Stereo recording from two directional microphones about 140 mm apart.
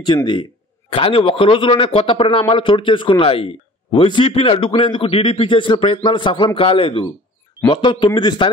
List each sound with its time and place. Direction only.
0.0 s a man's voice: 35° left (ahead or behind)